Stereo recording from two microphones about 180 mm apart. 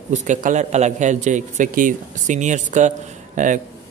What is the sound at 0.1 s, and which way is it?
A man's voice, 40° right (ahead or behind).